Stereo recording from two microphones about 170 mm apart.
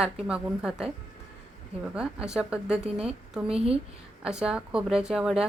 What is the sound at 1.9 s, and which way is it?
A woman's voice, 5° right (ahead or behind).